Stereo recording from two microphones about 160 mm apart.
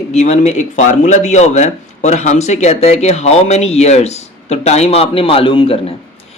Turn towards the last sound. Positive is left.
turn(degrees=35)  # may be behind; listen again after turning